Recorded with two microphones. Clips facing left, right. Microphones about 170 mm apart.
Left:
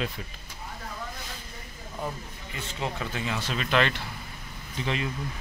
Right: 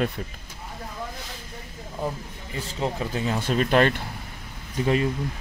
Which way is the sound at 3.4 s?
50° right (ahead or behind).